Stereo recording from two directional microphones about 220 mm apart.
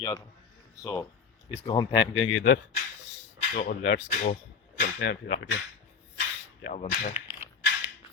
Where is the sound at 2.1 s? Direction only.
70° left (ahead or behind).